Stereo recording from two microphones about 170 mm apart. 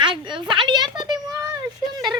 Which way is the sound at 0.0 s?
30° right (ahead or behind).